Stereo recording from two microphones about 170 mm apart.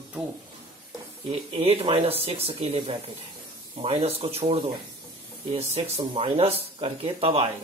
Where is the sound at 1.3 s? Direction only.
35° right (ahead or behind).